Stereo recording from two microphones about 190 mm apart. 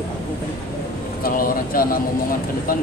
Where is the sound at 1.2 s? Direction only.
50° left (ahead or behind).